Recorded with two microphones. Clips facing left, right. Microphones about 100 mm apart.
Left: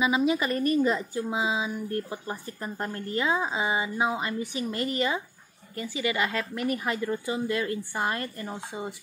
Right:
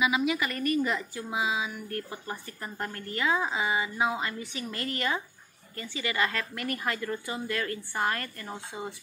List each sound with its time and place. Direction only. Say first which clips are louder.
0.0 s a woman's voice: left 3 dB; 30° left (ahead or behind)